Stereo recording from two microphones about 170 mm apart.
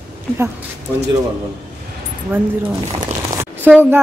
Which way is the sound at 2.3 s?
10° right (ahead or behind).